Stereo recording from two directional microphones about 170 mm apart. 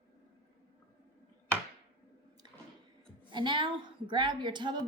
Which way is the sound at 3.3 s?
30° right (ahead or behind).